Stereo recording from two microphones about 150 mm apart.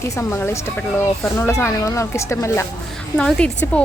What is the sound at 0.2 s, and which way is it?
A woman's voice, 15° left (ahead or behind).